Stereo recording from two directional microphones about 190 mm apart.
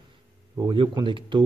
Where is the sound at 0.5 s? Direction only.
25° right (ahead or behind).